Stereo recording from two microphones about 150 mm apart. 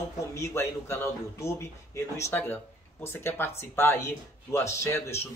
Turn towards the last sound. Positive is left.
turn(degrees=15)  # may be behind; listen again after turning